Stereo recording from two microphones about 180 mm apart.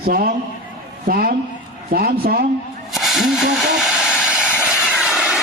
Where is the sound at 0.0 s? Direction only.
55° right (ahead or behind).